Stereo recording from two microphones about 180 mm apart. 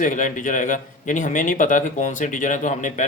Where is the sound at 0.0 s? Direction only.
45° left (ahead or behind).